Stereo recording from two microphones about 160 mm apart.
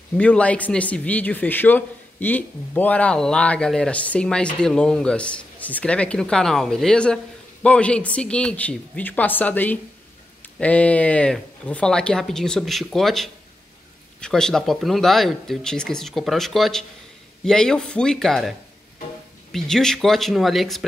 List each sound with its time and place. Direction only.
0.2 s speech: 10° left (ahead or behind)
19.5 s speech: 5° left (ahead or behind)